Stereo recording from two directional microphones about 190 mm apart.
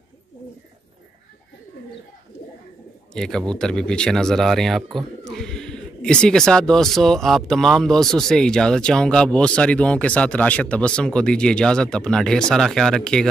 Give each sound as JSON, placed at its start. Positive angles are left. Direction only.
{"t": 3.2, "sound": "speech", "side_deg": 5}